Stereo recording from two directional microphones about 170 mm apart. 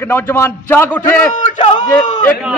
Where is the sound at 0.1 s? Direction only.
15° left (ahead or behind).